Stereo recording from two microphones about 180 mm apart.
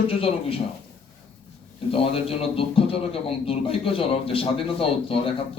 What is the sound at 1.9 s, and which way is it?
A man's voice, 30° left (ahead or behind).